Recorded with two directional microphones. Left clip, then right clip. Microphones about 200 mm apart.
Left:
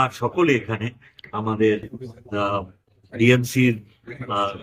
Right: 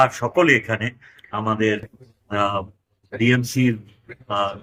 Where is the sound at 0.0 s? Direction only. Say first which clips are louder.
Right 4 dB; 10° right (ahead or behind).